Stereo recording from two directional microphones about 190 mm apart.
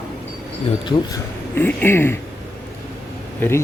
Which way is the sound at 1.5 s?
10° left (ahead or behind).